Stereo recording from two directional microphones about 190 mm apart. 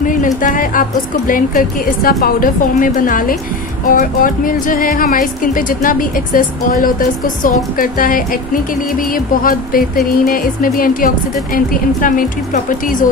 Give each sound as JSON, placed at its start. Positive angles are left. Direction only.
{"t": 0.0, "sound": "speech", "side_deg": 45}